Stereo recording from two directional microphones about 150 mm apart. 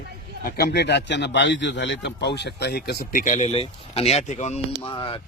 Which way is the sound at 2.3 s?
90° left.